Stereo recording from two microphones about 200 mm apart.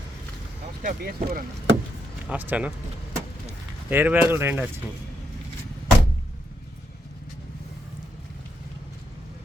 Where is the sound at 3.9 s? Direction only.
10° right (ahead or behind).